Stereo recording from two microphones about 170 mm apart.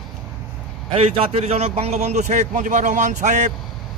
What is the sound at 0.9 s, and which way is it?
A man's voice, 35° right (ahead or behind).